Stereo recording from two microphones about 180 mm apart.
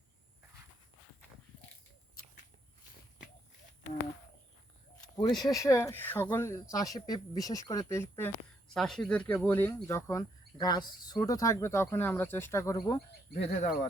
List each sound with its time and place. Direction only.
4.9 s speech: 20° left (ahead or behind)
8.7 s speech: centre (ahead or behind); by 13.0 s 20° left (ahead or behind)
13.3 s speech: 35° left (ahead or behind)